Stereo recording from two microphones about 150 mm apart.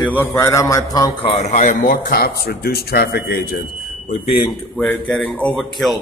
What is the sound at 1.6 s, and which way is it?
A man's voice, 60° left (ahead or behind).